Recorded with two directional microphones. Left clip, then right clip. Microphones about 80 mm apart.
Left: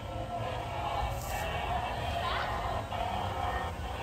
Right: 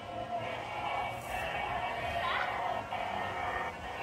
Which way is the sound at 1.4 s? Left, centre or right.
Left.